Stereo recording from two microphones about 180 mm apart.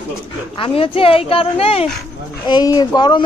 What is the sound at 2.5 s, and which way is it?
Speech, 20° left (ahead or behind).